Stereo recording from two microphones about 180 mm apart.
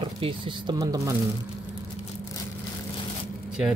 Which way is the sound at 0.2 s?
20° right (ahead or behind).